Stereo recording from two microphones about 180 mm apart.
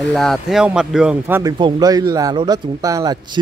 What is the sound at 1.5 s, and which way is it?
Speech, 25° right (ahead or behind).